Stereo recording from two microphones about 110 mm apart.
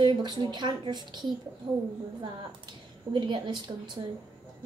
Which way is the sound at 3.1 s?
45° right (ahead or behind).